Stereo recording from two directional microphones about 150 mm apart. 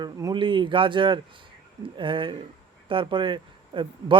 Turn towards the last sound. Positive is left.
turn(degrees=-30)  # may be behind; listen again after turning